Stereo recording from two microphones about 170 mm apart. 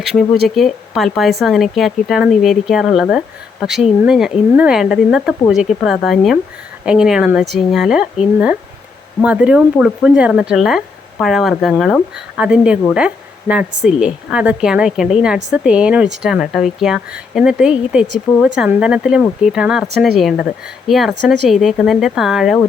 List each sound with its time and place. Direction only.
0.0 s speech: centre (ahead or behind)